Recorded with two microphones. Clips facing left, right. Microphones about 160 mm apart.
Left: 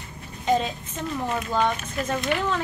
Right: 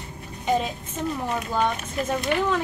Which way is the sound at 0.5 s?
10° right (ahead or behind).